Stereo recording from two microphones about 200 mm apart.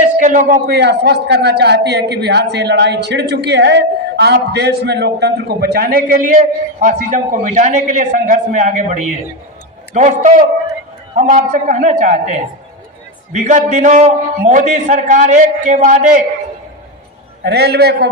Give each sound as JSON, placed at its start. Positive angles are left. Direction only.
{"t": 0.2, "sound": "a sound", "side_deg": -40}
{"t": 0.7, "sound": "a woman's voice", "side_deg": -55}
{"t": 17.4, "sound": "a man's voice", "side_deg": -55}